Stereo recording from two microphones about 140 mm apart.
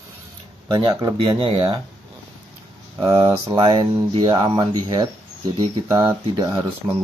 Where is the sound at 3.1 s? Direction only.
40° right (ahead or behind).